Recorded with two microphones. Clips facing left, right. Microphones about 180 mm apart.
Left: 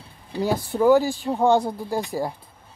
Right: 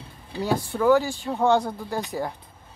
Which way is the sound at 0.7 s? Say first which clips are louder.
Left 3 dB; 15° left (ahead or behind).